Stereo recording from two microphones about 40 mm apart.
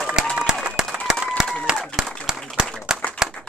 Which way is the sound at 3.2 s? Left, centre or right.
Centre.